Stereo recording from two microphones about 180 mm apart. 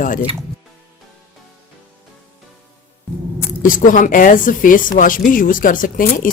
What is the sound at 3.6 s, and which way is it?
Speech, 50° left (ahead or behind).